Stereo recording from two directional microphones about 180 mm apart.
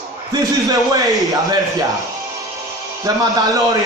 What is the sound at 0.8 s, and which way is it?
A man's voice, 20° right (ahead or behind).